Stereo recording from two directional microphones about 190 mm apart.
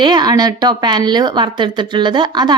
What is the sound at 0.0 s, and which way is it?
Speech, 20° right (ahead or behind).